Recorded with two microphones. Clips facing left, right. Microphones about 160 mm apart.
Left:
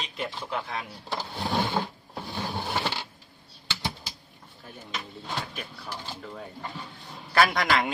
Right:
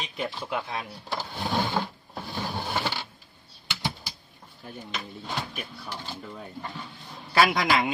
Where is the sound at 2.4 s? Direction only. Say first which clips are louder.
Even; 10° left (ahead or behind).